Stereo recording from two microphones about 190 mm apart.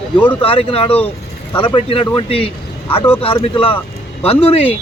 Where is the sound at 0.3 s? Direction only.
30° left (ahead or behind).